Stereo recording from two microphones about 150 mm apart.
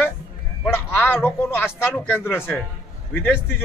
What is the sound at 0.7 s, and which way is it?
A man's voice, 15° left (ahead or behind).